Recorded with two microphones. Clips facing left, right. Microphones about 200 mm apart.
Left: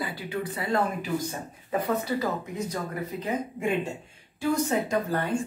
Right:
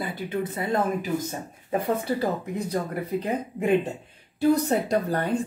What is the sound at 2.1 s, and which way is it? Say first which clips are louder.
Speech: right 2 dB; 35° right (ahead or behind).